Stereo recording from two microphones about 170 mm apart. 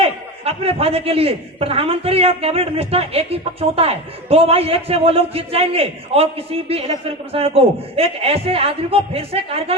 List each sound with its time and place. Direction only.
0.0 s a man's voice: 35° right (ahead or behind)